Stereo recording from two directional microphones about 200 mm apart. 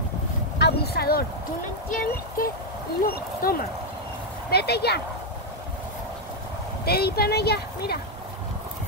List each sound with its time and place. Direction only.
0.6 s speech: 50° left (ahead or behind)
6.8 s speech: 50° left (ahead or behind)